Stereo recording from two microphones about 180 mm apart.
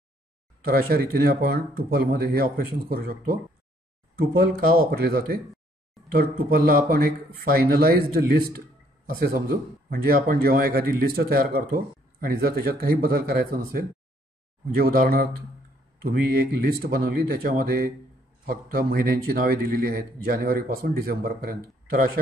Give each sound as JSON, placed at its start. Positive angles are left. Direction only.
{"t": 0.7, "sound": "a man's voice", "side_deg": -55}
{"t": 16.6, "sound": "a man's voice", "side_deg": -55}